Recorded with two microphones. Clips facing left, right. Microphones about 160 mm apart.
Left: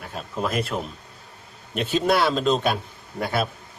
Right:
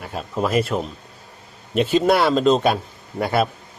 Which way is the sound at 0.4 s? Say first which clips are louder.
Right 5 dB; centre (ahead or behind).